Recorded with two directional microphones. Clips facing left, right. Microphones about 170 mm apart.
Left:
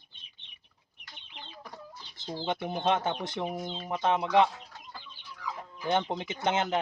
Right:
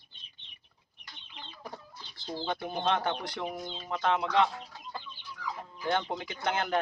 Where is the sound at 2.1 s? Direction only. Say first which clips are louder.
Left 1 dB; 20° left (ahead or behind).